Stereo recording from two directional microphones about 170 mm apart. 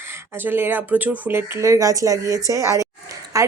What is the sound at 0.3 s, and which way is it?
Speech, 10° right (ahead or behind).